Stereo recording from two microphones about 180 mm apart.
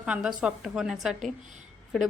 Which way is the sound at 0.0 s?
5° right (ahead or behind).